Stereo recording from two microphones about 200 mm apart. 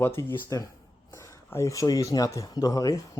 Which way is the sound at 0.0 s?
10° left (ahead or behind).